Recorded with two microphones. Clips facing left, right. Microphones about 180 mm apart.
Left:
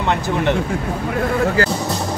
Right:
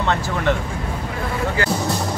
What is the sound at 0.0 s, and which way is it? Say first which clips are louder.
Speech: left 2 dB; 20° left (ahead or behind).